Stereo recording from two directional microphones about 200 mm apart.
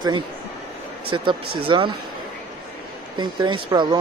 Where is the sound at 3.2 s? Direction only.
20° right (ahead or behind).